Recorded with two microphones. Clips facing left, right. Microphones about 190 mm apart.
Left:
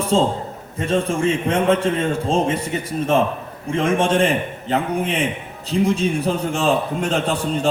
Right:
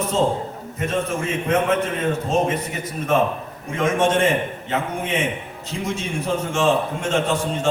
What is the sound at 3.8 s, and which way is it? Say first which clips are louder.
A man's voice: left 1 dB; 30° left (ahead or behind).